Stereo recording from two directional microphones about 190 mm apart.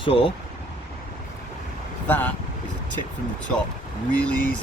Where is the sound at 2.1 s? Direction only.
10° left (ahead or behind).